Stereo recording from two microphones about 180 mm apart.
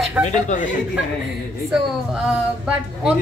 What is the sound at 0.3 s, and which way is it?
Speech, 40° left (ahead or behind).